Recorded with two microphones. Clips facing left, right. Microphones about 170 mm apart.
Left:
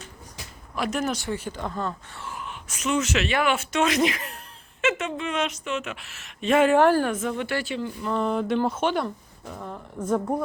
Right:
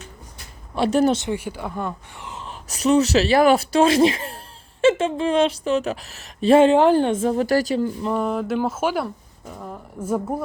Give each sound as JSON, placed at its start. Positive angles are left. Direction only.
{"t": 0.8, "sound": "a woman's voice", "side_deg": -30}
{"t": 1.2, "sound": "speech", "side_deg": -15}
{"t": 2.4, "sound": "a woman's voice", "side_deg": -35}
{"t": 6.7, "sound": "a woman's voice", "side_deg": -20}
{"t": 8.1, "sound": "speech", "side_deg": -5}